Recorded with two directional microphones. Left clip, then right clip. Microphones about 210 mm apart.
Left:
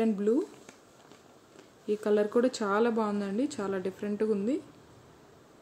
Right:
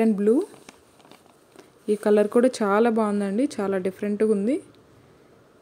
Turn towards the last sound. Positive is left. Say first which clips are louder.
# right 7 dB
turn(degrees=-30)  # may be behind; listen again after turning